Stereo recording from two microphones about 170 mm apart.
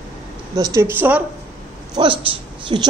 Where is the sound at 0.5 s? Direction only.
20° right (ahead or behind).